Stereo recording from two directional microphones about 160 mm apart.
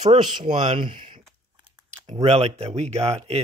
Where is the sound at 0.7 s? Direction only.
30° right (ahead or behind).